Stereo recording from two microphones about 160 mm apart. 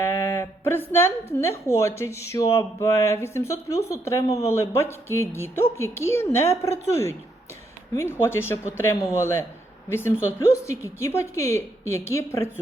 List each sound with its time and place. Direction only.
0.0 s a woman's voice: 15° left (ahead or behind)